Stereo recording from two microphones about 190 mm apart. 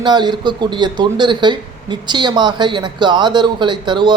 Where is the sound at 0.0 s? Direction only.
25° right (ahead or behind).